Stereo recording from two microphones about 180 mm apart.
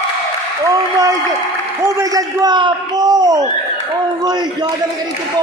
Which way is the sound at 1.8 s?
20° right (ahead or behind).